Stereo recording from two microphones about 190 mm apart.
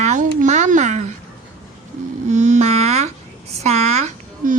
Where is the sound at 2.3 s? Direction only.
40° right (ahead or behind).